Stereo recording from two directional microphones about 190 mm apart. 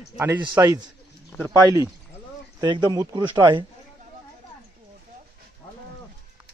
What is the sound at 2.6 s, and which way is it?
Speech, 20° right (ahead or behind).